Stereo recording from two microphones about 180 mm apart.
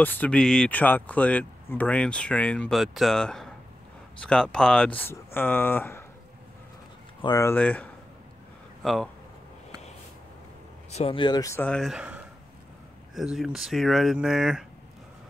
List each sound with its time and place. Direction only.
0.0 s speech: 10° left (ahead or behind)
7.2 s speech: 20° left (ahead or behind); by 9.1 s centre (ahead or behind)
10.9 s speech: 35° left (ahead or behind); by 14.6 s 5° right (ahead or behind)